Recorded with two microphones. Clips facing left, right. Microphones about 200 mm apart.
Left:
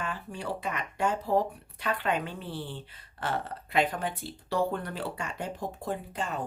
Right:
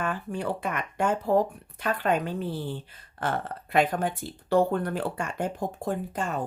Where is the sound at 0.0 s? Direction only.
50° right (ahead or behind).